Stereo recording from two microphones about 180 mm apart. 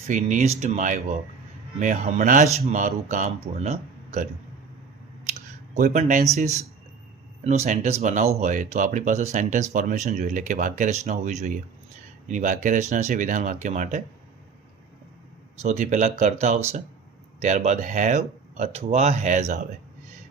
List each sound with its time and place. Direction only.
0.1 s speech: 40° right (ahead or behind)
5.3 s a sound: 45° right (ahead or behind)
6.3 s speech: 40° right (ahead or behind)
15.6 s speech: 40° right (ahead or behind)